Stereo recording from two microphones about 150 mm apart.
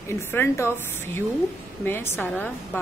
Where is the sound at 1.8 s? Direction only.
15° left (ahead or behind).